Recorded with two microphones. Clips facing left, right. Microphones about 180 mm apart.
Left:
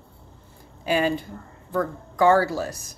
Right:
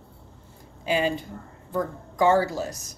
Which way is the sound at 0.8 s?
20° right (ahead or behind).